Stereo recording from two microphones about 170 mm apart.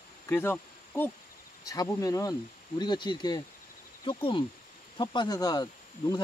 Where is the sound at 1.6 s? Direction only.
20° left (ahead or behind).